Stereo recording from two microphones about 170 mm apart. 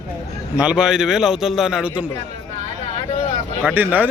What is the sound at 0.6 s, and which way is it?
A man's voice, 5° right (ahead or behind).